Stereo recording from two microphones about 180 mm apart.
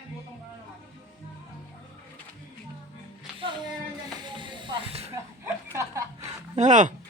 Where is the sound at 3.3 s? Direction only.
25° right (ahead or behind).